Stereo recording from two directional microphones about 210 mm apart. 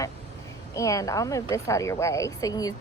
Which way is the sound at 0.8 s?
15° left (ahead or behind).